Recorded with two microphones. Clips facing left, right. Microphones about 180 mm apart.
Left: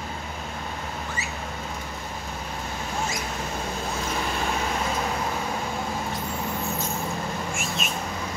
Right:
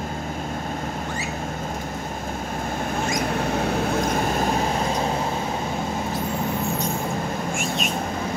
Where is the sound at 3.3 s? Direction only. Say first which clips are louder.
Right 8 dB; 70° right (ahead or behind).